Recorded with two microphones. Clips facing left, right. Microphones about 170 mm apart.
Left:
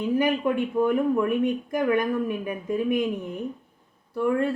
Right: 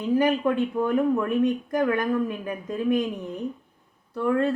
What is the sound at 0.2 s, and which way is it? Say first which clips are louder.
Speech: right 2 dB; 10° left (ahead or behind).